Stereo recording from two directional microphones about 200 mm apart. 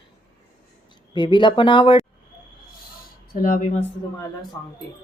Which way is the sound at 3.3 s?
40° left (ahead or behind).